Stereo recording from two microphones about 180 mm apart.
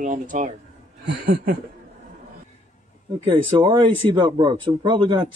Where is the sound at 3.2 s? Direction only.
25° right (ahead or behind).